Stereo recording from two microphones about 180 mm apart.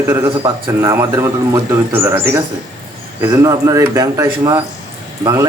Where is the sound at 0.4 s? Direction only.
15° right (ahead or behind).